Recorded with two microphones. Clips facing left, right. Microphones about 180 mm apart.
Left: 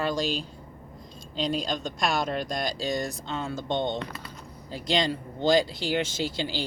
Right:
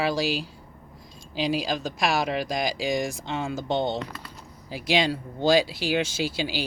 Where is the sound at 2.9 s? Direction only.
90° right.